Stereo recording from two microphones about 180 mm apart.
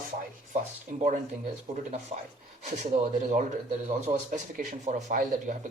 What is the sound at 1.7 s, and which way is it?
Speech, 40° right (ahead or behind).